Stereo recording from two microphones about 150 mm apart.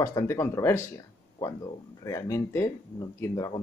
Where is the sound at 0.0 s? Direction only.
20° left (ahead or behind).